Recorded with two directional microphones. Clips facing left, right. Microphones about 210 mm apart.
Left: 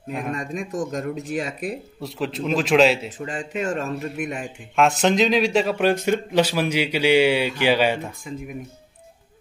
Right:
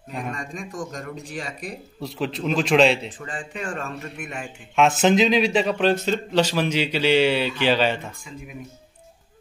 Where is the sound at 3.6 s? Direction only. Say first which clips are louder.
Left 6 dB; 20° left (ahead or behind).